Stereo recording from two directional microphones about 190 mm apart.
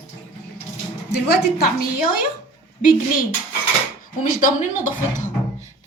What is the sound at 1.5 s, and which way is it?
Speech, 50° left (ahead or behind).